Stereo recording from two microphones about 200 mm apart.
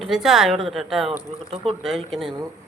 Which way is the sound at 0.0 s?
Centre (ahead or behind).